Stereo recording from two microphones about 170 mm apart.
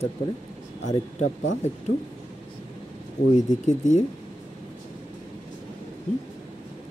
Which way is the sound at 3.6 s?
45° left (ahead or behind).